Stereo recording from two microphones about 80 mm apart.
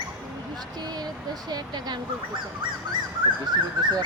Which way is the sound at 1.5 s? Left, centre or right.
Right.